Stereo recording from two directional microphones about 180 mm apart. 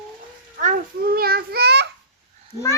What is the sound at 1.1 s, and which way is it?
Speech, 55° right (ahead or behind).